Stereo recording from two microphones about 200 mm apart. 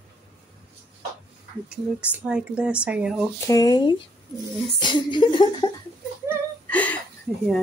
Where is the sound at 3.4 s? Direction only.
20° left (ahead or behind).